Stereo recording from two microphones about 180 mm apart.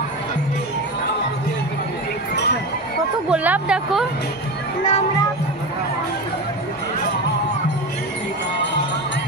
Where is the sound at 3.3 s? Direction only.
5° right (ahead or behind).